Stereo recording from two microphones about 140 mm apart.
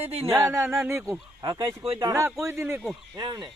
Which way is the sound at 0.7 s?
20° right (ahead or behind).